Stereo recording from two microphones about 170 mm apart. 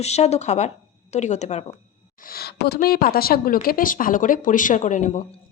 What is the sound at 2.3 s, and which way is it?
Speech, 70° left (ahead or behind).